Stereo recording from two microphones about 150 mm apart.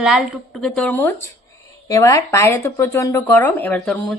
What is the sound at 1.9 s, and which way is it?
Speech, 20° left (ahead or behind).